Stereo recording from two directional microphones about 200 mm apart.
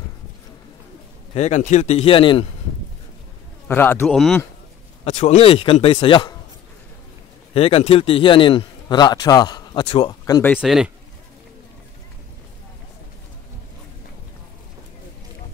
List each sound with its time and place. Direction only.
1.3 s a man's voice: 35° left (ahead or behind)
3.6 s speech: 10° left (ahead or behind)
5.0 s a man's voice: 35° left (ahead or behind)
7.5 s a man's voice: 30° left (ahead or behind); by 10.6 s 15° left (ahead or behind)
10.6 s speech: 5° right (ahead or behind)